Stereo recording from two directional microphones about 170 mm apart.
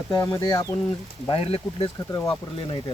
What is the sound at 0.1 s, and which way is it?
Speech, 20° left (ahead or behind).